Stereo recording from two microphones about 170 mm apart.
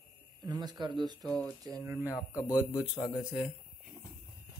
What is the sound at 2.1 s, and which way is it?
Speech, 20° left (ahead or behind).